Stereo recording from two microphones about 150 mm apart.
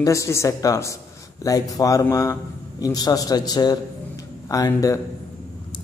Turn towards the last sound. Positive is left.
turn(degrees=20)  # may be behind; listen again after turning